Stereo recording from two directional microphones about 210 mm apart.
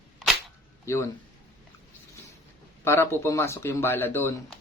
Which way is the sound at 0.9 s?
15° left (ahead or behind).